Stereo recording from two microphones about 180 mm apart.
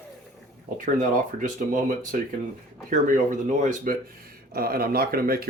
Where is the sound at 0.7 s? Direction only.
50° right (ahead or behind).